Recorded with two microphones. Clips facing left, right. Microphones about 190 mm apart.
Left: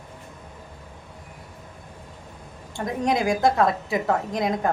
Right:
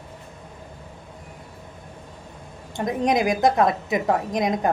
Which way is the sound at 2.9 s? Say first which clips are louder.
Right 2 dB; 20° right (ahead or behind).